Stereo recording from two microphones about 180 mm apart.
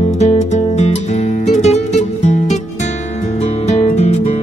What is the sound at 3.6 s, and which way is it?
Music, 40° left (ahead or behind).